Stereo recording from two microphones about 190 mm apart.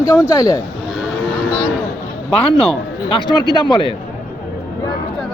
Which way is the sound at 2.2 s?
30° left (ahead or behind).